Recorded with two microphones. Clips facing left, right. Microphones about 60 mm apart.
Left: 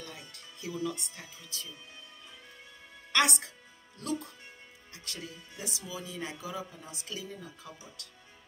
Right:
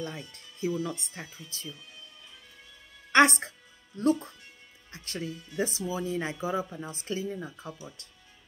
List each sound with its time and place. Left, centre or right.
0.3 s a woman's voice: right
3.1 s music: right
4.9 s a woman's voice: right